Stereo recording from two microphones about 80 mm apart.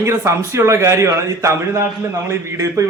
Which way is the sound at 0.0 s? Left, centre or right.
Right.